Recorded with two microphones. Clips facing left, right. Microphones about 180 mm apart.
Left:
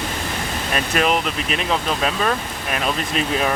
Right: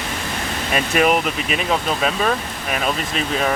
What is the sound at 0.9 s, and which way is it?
Speech, 5° right (ahead or behind).